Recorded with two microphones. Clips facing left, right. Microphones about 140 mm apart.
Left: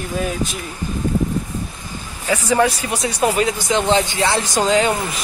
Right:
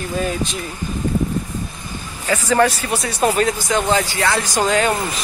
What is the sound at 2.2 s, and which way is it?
Speech, 10° left (ahead or behind).